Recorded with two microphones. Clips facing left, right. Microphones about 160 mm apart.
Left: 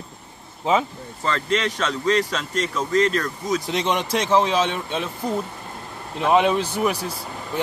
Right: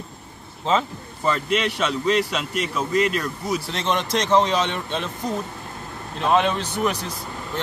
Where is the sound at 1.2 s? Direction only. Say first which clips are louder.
Right 1 dB; 10° right (ahead or behind).